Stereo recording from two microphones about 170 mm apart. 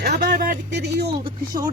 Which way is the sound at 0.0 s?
75° right (ahead or behind).